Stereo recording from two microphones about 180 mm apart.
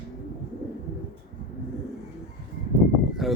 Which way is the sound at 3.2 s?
Centre (ahead or behind).